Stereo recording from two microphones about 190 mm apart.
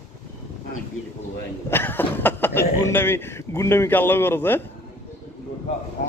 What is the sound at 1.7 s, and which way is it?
Speech, 10° left (ahead or behind).